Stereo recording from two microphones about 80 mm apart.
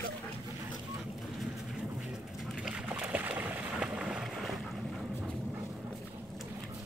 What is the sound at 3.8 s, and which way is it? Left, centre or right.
Boat, centre.